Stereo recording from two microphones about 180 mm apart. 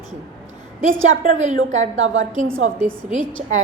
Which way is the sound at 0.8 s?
90° right.